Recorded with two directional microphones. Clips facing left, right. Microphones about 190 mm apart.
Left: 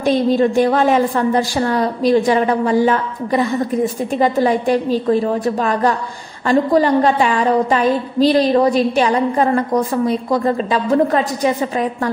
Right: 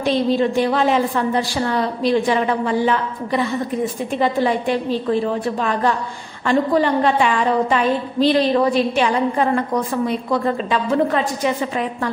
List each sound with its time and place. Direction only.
0.0 s a woman's voice: 45° left (ahead or behind)